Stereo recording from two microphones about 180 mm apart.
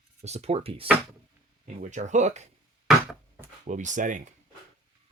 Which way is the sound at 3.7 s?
45° right (ahead or behind).